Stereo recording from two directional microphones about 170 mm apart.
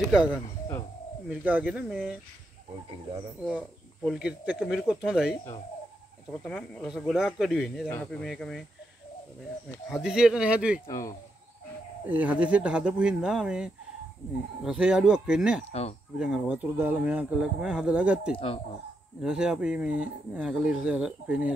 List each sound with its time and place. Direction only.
0.0 s speech: 5° right (ahead or behind)
4.0 s speech: 5° right (ahead or behind)
6.4 s speech: 5° left (ahead or behind)
9.8 s speech: centre (ahead or behind)
10.9 s speech: 20° left (ahead or behind)
12.1 s speech: 10° right (ahead or behind)
18.3 s speech: 35° left (ahead or behind)
19.2 s speech: 5° right (ahead or behind)